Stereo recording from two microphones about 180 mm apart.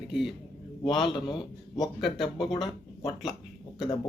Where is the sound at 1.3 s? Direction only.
25° left (ahead or behind).